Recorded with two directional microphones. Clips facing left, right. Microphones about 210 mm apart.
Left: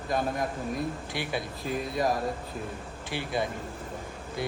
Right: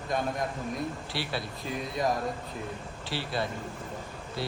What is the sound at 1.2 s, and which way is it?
Speech, 15° left (ahead or behind).